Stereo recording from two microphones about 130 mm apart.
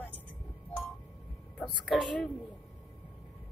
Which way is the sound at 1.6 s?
Centre (ahead or behind).